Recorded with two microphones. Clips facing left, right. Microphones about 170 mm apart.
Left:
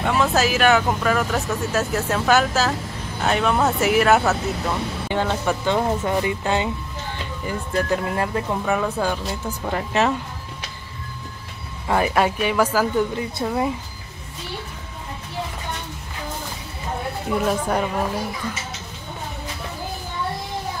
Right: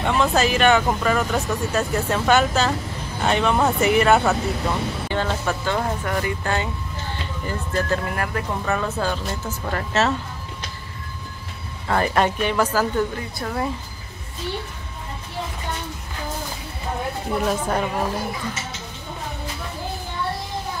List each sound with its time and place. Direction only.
0.0 s speech: 5° left (ahead or behind)
5.1 s speech: 15° left (ahead or behind)
8.6 s speech: 15° left (ahead or behind)
11.9 s speech: 5° left (ahead or behind)
17.5 s speech: 10° left (ahead or behind)